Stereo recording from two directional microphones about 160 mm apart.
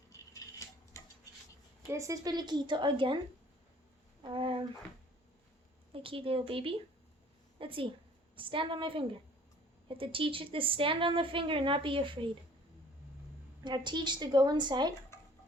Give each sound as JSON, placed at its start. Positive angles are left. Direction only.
{"t": 0.1, "sound": "a sound", "side_deg": 20}
{"t": 1.9, "sound": "a woman's voice", "side_deg": -20}
{"t": 4.2, "sound": "speech", "side_deg": -30}
{"t": 5.9, "sound": "a woman's voice", "side_deg": -35}
{"t": 13.7, "sound": "a woman's voice", "side_deg": -30}